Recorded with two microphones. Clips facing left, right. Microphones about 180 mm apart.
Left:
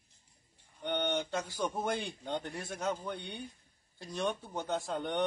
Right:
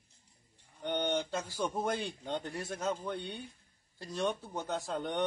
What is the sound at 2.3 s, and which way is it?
A man's voice, centre (ahead or behind).